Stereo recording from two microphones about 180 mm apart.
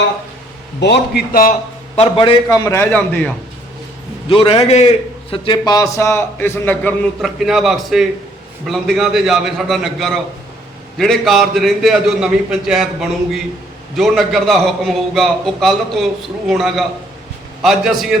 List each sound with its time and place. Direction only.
0.8 s a man's voice: 65° left (ahead or behind)
2.0 s a man's voice: 30° left (ahead or behind); by 3.3 s 10° left (ahead or behind)
4.3 s a man's voice: 30° left (ahead or behind)
5.3 s a man's voice: 25° left (ahead or behind)
7.2 s a man's voice: centre (ahead or behind)